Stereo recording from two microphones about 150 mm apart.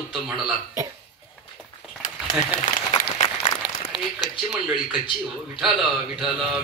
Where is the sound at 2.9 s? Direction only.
35° left (ahead or behind).